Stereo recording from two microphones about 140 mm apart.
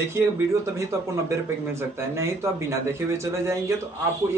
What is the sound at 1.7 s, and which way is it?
Speech, 20° right (ahead or behind).